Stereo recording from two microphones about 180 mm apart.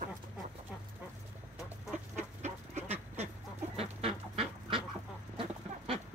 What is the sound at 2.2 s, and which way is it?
Chicken, 40° right (ahead or behind).